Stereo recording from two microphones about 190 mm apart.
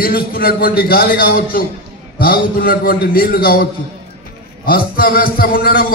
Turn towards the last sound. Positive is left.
turn(degrees=50)  # may be behind; listen again after turning